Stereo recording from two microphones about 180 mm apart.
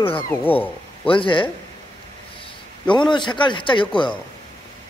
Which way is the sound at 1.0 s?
30° left (ahead or behind).